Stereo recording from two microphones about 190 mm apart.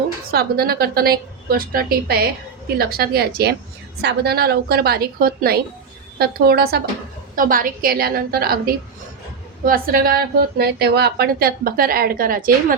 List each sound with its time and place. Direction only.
0.3 s a woman's voice: 55° right (ahead or behind)